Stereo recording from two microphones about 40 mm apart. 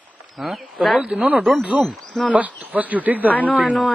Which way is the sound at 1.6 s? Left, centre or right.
Right.